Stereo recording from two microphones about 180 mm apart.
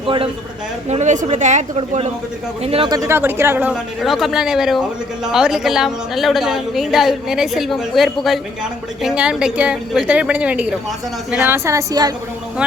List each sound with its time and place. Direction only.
0.9 s a woman's voice: 40° right (ahead or behind); by 12.1 s 20° right (ahead or behind)